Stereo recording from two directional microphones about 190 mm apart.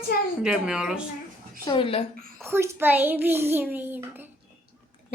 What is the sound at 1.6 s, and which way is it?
Speech, 30° left (ahead or behind).